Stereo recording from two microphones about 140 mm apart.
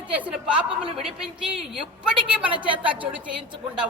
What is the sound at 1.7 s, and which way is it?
Speech, 5° right (ahead or behind).